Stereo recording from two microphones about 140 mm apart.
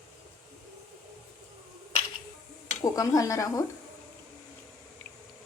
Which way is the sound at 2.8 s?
25° left (ahead or behind).